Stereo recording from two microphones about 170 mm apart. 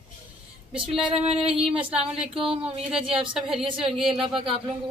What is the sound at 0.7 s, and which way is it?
A woman's voice, 5° right (ahead or behind).